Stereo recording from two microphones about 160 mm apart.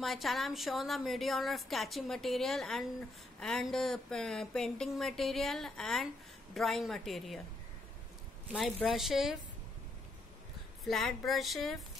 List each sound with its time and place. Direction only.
0.0 s a woman's voice: centre (ahead or behind)
8.5 s a woman's voice: centre (ahead or behind)
10.8 s a woman's voice: centre (ahead or behind)